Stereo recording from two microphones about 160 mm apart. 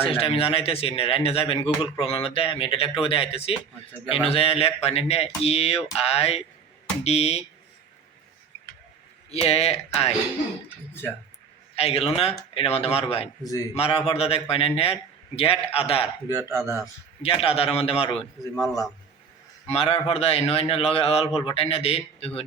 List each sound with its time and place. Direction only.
0.0 s speech: 35° left (ahead or behind)
9.3 s speech: 40° left (ahead or behind)
11.8 s speech: 40° left (ahead or behind)
13.4 s a man's voice: 20° left (ahead or behind)
13.7 s speech: 40° left (ahead or behind)
16.3 s a man's voice: 20° left (ahead or behind)
17.2 s speech: 40° left (ahead or behind)
18.6 s a man's voice: centre (ahead or behind)
19.6 s speech: 40° left (ahead or behind)